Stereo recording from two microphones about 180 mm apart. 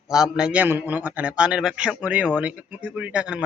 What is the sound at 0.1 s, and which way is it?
A man's voice, 5° right (ahead or behind).